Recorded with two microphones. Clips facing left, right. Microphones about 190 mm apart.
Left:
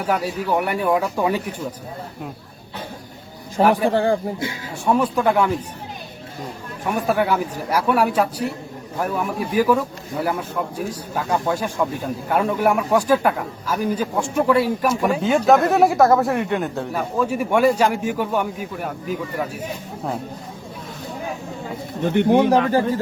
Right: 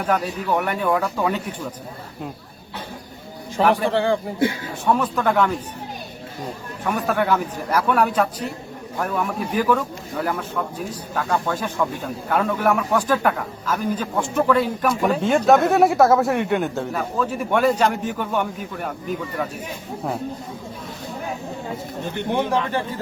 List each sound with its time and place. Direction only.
0.0 s a man's voice: 10° left (ahead or behind)
3.6 s a man's voice: 10° left (ahead or behind)
3.8 s speech: 40° left (ahead or behind)
4.9 s a man's voice: 10° left (ahead or behind)
6.8 s a man's voice: 10° left (ahead or behind)
22.0 s speech: 65° left (ahead or behind)